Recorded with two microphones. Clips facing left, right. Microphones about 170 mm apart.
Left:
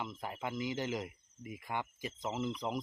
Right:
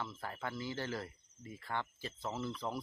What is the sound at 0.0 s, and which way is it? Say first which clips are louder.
Speech: left 2 dB; 15° left (ahead or behind).